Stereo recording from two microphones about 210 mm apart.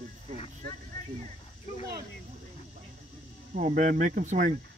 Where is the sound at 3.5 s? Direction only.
40° right (ahead or behind).